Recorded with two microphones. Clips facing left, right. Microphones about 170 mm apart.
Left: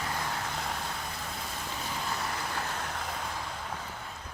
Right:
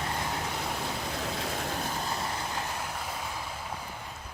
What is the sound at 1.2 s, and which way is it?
Rain, 90° right.